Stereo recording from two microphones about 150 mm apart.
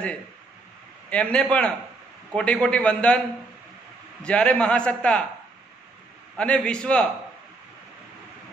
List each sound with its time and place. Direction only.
1.1 s a man's voice: 10° left (ahead or behind)
4.2 s a man's voice: 10° left (ahead or behind)
6.3 s a man's voice: 5° left (ahead or behind)